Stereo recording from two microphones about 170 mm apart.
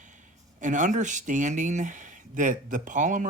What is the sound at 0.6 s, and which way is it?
Speech, 50° right (ahead or behind).